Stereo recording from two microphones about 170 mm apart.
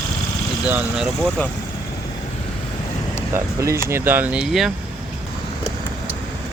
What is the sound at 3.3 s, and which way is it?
Speech, 15° right (ahead or behind).